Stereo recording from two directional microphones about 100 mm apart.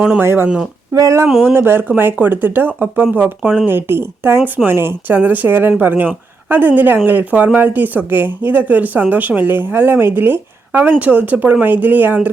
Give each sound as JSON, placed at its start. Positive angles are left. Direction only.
{"t": 0.2, "sound": "speech", "side_deg": -20}
{"t": 0.9, "sound": "a sound", "side_deg": -30}
{"t": 1.5, "sound": "speech", "side_deg": -20}